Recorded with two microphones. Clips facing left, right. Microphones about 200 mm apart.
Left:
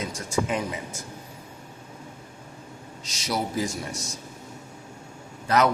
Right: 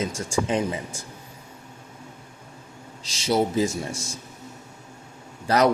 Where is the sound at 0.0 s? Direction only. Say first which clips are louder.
Right 2 dB; 25° right (ahead or behind).